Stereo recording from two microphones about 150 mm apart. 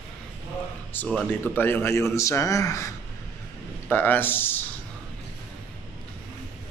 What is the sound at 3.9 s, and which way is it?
Speech, 15° left (ahead or behind).